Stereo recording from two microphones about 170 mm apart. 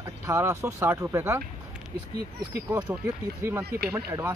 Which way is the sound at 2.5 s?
10° right (ahead or behind).